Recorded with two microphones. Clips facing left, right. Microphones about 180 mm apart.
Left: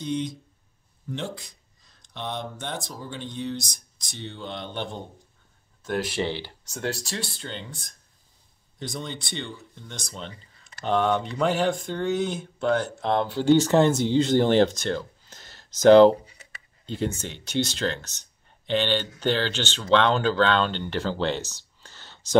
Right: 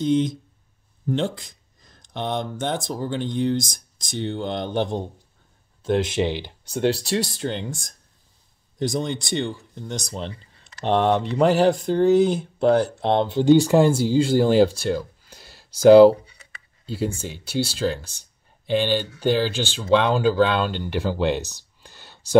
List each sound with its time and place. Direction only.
0.1 s speech: 90° right
1.0 s a sound: 90° right
2.8 s speech: 75° right (ahead or behind)
4.3 s speech: 45° right (ahead or behind)
5.9 s speech: 25° right (ahead or behind)
6.6 s speech: 30° right (ahead or behind)
10.0 s speech: 35° right (ahead or behind); by 22.4 s 10° right (ahead or behind)